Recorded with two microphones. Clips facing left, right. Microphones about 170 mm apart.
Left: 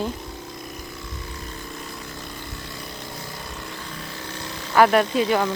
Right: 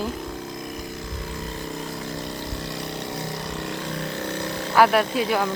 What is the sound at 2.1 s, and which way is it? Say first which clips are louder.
Vehicle: right 6 dB; 85° right.